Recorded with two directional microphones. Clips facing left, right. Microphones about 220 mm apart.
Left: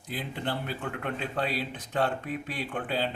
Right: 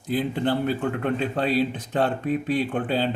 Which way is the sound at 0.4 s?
35° right (ahead or behind).